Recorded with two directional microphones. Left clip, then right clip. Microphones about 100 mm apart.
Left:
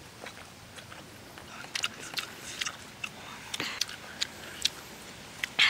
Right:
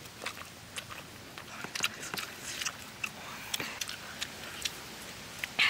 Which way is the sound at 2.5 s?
Centre (ahead or behind).